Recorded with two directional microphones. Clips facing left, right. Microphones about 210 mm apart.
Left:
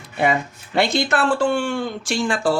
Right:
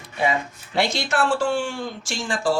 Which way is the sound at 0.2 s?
55° left (ahead or behind).